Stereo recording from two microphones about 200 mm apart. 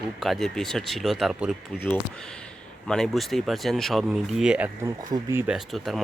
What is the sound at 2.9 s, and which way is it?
A man's voice, centre (ahead or behind).